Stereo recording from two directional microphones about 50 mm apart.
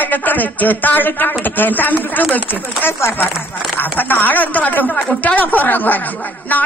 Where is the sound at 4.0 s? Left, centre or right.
Left.